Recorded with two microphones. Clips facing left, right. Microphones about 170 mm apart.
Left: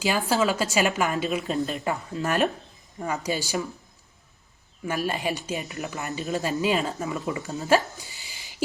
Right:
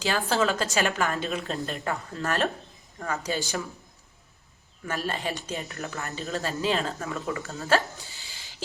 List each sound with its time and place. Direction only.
0.0 s speech: 10° left (ahead or behind)
1.8 s speech: 15° left (ahead or behind)
4.9 s speech: 10° left (ahead or behind)
7.3 s a sound: 15° left (ahead or behind)